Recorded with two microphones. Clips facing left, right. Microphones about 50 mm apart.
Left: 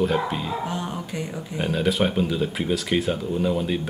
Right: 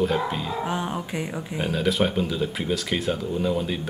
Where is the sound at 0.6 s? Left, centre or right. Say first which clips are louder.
Right 2 dB; centre.